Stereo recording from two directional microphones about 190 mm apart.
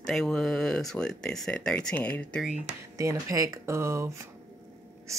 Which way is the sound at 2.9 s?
15° right (ahead or behind).